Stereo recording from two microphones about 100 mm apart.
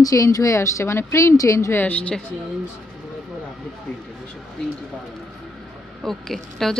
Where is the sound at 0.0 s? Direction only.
35° left (ahead or behind).